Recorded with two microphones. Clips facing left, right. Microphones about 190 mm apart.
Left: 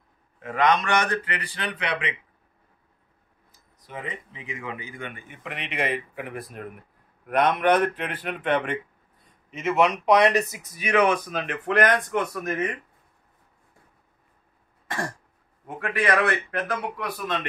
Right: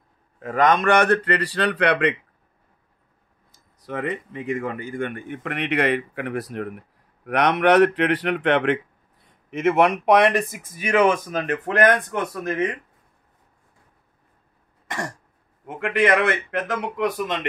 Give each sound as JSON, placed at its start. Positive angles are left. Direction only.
{"t": 0.4, "sound": "speech", "side_deg": -40}
{"t": 3.8, "sound": "speech", "side_deg": -70}
{"t": 9.5, "sound": "speech", "side_deg": -60}
{"t": 15.8, "sound": "a man's voice", "side_deg": -20}